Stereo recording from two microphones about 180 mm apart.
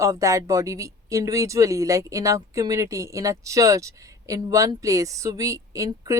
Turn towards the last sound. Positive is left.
turn(degrees=-15)  # may be behind; listen again after turning